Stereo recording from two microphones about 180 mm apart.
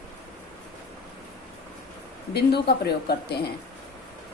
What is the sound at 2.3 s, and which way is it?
A woman's voice, 65° left (ahead or behind).